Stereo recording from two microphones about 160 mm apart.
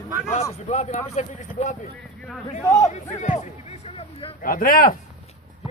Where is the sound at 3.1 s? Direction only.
50° left (ahead or behind).